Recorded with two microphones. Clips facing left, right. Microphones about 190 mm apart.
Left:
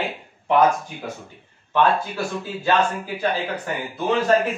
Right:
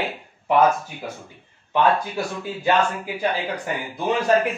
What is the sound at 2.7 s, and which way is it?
Speech, 15° right (ahead or behind).